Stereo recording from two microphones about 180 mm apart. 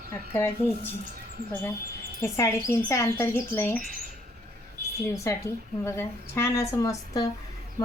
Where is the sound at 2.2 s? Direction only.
15° left (ahead or behind).